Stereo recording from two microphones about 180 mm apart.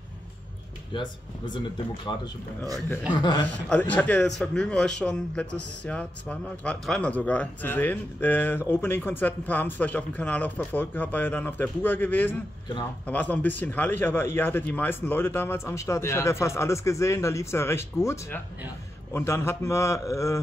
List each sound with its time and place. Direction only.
0.9 s speech: 25° left (ahead or behind)
3.6 s speech: 10° left (ahead or behind)